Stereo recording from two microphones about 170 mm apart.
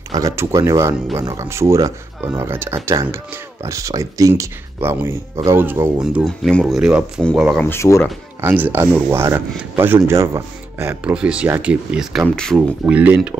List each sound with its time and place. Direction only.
0.1 s speech: 20° right (ahead or behind)
6.1 s speech: centre (ahead or behind)
7.6 s speech: 15° left (ahead or behind)
8.4 s speech: 10° right (ahead or behind)